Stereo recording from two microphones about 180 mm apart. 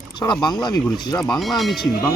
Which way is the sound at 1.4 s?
Centre (ahead or behind).